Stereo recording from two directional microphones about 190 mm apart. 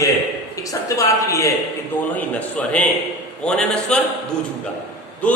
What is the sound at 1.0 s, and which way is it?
A man's voice, 15° left (ahead or behind).